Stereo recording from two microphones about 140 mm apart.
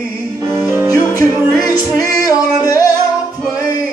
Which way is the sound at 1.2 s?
25° left (ahead or behind).